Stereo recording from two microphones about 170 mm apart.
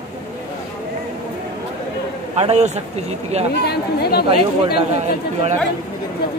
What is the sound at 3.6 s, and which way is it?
Speech, 70° left (ahead or behind).